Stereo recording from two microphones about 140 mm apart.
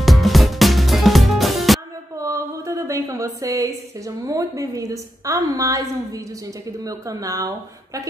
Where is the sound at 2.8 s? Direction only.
20° right (ahead or behind).